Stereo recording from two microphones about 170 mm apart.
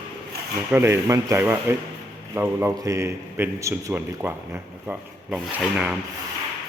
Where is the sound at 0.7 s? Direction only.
15° right (ahead or behind).